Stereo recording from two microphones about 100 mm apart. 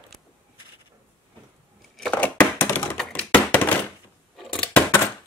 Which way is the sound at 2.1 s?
15° left (ahead or behind).